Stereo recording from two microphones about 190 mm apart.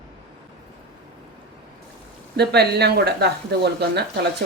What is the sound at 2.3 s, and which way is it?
A woman's voice, 60° right (ahead or behind).